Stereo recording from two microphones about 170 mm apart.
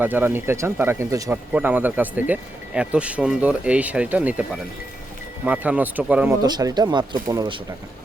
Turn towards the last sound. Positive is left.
turn(degrees=-25)  # may be behind; listen again after turning